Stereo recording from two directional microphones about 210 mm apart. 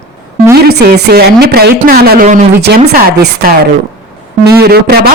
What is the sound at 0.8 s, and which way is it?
Speech, 50° right (ahead or behind).